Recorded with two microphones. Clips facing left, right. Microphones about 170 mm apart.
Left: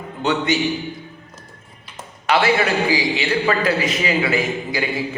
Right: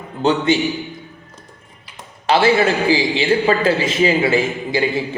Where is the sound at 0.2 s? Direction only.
30° right (ahead or behind).